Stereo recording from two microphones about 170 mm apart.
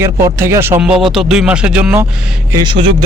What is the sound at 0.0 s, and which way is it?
Speech, 15° right (ahead or behind).